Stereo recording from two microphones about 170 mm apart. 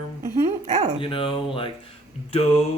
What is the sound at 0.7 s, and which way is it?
Dog, 40° right (ahead or behind).